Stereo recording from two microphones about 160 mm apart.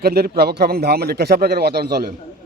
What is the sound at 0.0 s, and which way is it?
A man's voice, 80° right.